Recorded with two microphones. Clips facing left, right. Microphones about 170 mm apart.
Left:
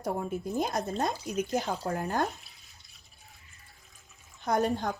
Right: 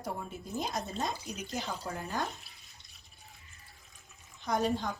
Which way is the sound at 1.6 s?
60° left (ahead or behind).